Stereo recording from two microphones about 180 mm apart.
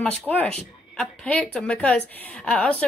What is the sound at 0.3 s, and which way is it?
Speech, 10° left (ahead or behind).